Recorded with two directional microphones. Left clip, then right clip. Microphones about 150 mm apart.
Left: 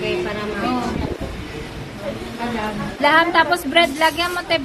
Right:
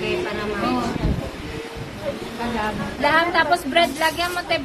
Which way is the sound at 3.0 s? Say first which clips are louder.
Left 3 dB; 40° left (ahead or behind).